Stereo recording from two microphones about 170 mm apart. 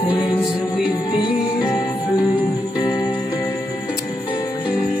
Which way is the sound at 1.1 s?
25° left (ahead or behind).